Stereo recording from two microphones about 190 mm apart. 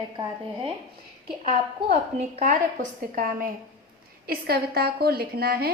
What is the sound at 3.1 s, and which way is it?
A woman's voice, 45° right (ahead or behind).